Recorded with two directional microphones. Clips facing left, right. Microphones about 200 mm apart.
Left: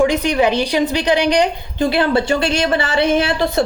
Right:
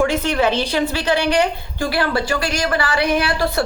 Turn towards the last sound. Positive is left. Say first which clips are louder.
# left 3 dB
turn(degrees=20)  # may be behind; listen again after turning